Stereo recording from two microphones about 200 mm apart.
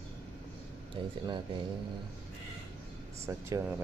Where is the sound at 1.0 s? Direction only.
25° right (ahead or behind).